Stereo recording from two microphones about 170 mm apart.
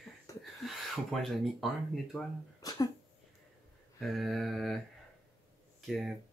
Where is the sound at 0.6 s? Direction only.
Centre (ahead or behind).